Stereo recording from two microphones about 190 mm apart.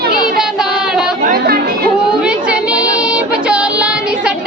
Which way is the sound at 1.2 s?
55° right (ahead or behind).